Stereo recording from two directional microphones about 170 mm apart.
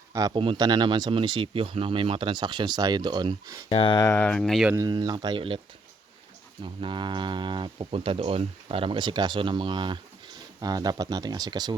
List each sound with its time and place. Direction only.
0.1 s speech: 20° right (ahead or behind)
3.7 s speech: 30° left (ahead or behind); by 4.7 s centre (ahead or behind)
4.7 s speech: 20° right (ahead or behind)
6.6 s speech: 30° right (ahead or behind)